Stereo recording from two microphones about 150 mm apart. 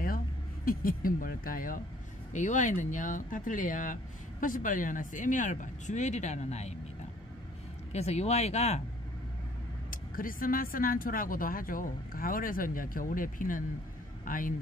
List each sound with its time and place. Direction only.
0.7 s speech: 70° left (ahead or behind)
2.3 s speech: 55° left (ahead or behind)
7.9 s speech: 45° left (ahead or behind)
9.8 s a man's voice: 70° left (ahead or behind)